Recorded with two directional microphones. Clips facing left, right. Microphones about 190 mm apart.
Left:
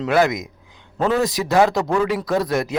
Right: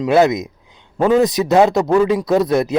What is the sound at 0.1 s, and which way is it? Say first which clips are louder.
A man's voice: right 5 dB; 25° right (ahead or behind).